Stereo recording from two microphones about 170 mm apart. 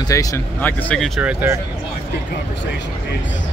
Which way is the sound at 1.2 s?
10° right (ahead or behind).